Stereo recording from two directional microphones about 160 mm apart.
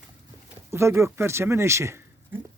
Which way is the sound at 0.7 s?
15° right (ahead or behind).